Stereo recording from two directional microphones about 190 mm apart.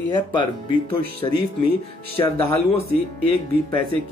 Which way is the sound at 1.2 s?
20° left (ahead or behind).